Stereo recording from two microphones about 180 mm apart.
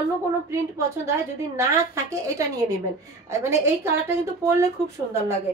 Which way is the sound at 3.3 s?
15° right (ahead or behind).